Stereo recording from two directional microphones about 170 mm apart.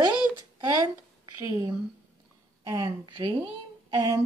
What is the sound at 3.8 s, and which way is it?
Humming, 20° right (ahead or behind).